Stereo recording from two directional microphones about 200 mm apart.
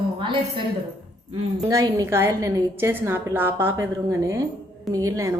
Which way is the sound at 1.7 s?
15° right (ahead or behind).